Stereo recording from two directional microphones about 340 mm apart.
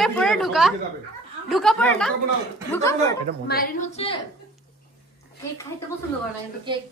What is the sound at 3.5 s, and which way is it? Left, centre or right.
Speech, left.